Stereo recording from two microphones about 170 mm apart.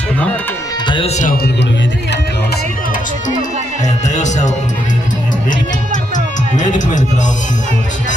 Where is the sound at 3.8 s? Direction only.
45° left (ahead or behind).